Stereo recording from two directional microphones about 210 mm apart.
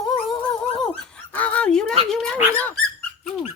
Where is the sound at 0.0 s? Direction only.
Centre (ahead or behind).